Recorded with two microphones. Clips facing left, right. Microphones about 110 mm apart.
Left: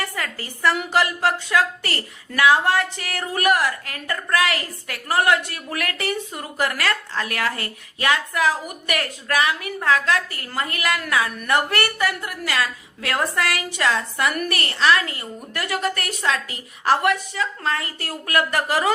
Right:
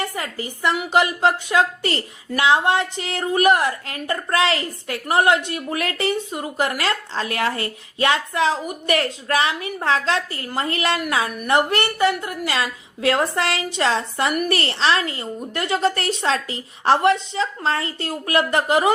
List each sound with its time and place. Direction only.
0.0 s a woman's voice: 20° right (ahead or behind)